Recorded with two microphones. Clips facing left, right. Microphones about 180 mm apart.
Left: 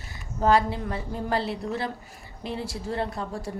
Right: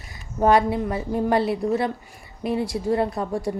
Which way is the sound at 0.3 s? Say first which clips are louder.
Right 4 dB; 20° right (ahead or behind).